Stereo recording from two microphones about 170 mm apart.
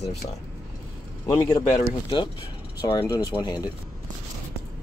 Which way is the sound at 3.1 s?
25° left (ahead or behind).